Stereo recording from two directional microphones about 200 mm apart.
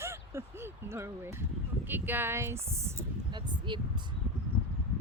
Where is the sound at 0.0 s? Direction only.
15° right (ahead or behind).